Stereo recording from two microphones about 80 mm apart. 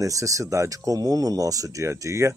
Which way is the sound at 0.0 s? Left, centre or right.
Right.